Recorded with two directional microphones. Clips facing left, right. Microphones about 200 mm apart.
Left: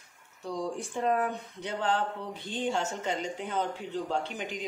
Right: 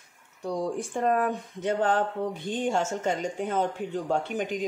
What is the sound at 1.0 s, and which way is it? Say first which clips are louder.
Speech: right 3 dB; 50° right (ahead or behind).